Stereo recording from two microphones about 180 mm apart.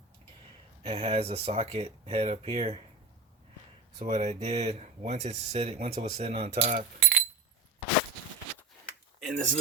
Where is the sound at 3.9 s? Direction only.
40° right (ahead or behind).